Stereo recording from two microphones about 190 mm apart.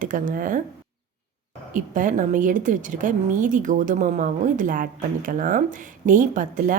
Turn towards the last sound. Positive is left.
turn(degrees=-45)  # may be behind; listen again after turning